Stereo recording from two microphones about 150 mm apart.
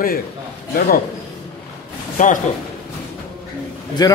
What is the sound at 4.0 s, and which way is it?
Speech, 25° left (ahead or behind).